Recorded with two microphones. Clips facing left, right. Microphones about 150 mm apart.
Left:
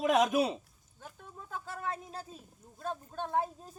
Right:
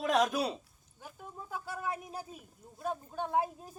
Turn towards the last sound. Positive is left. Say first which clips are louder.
# right 1 dB
turn(degrees=-10)  # may be behind; listen again after turning